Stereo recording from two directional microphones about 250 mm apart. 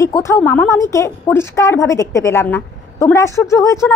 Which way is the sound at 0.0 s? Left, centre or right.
Centre.